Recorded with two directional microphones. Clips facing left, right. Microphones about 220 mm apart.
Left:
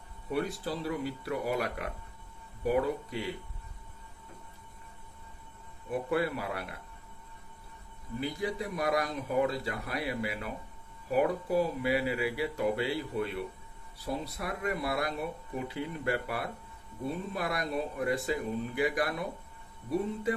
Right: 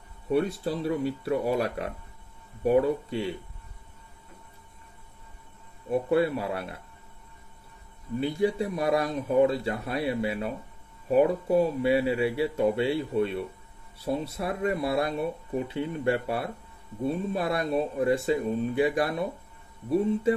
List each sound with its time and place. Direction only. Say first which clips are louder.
0.3 s speech: right 7 dB; 25° right (ahead or behind)
5.9 s speech: right 6 dB; 25° right (ahead or behind)
8.2 s speech: right 8 dB; 25° right (ahead or behind)